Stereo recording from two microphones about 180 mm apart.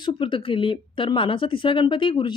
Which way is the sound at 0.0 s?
25° left (ahead or behind).